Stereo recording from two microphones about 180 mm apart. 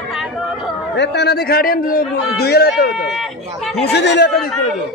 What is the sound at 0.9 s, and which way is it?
A man's voice, 70° left (ahead or behind).